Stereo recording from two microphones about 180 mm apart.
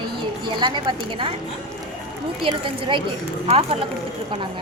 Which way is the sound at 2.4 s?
25° right (ahead or behind).